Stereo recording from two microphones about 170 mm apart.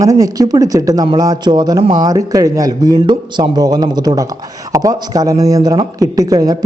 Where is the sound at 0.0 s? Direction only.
20° right (ahead or behind).